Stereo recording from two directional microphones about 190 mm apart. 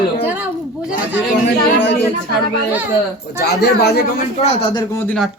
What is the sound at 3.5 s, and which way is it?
Speech, 60° left (ahead or behind).